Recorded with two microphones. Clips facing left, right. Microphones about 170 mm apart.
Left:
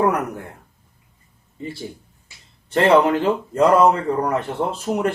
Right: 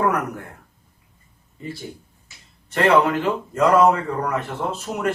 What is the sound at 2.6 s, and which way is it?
Speech, 25° left (ahead or behind).